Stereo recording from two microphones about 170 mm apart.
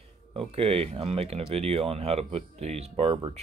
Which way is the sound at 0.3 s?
35° right (ahead or behind).